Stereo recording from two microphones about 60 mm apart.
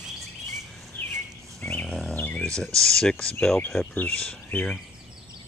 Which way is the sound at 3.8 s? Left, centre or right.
Left.